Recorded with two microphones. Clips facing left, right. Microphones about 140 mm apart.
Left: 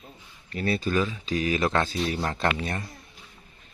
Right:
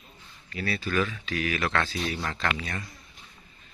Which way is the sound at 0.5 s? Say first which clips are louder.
Left 5 dB; 45° left (ahead or behind).